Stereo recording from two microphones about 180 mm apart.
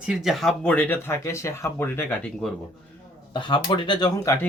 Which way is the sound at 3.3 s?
25° left (ahead or behind).